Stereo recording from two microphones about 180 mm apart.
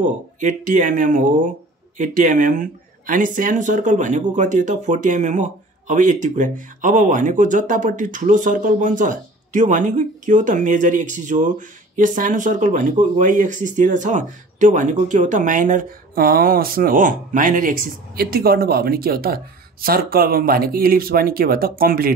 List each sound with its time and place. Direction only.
0.0 s speech: 45° right (ahead or behind)